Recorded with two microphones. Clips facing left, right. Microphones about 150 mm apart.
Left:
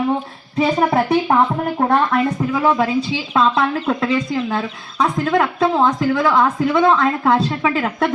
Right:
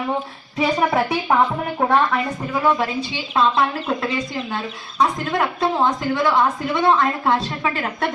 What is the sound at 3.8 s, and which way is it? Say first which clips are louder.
Speech: left 5 dB; 90° left.